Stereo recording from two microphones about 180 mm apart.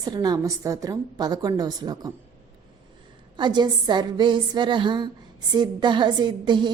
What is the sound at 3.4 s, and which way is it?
A woman's voice, 25° right (ahead or behind).